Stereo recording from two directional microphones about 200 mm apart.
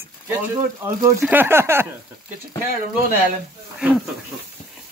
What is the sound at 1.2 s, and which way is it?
Speech, 10° right (ahead or behind).